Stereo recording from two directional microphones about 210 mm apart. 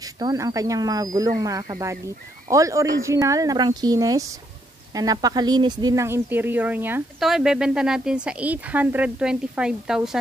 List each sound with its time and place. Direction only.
0.0 s speech: 15° right (ahead or behind)